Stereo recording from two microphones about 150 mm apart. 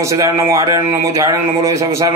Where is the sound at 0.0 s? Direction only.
20° right (ahead or behind).